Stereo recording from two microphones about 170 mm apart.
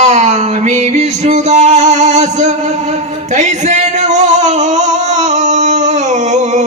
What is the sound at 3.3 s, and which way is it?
Singing, 40° right (ahead or behind).